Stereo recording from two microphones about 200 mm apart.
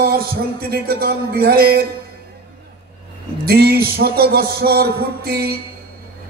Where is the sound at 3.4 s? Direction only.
50° right (ahead or behind).